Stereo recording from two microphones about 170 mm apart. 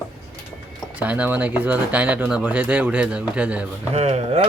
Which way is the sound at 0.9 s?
10° right (ahead or behind).